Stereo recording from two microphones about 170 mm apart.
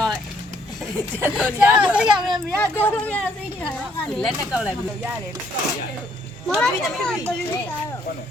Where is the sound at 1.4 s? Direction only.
10° right (ahead or behind).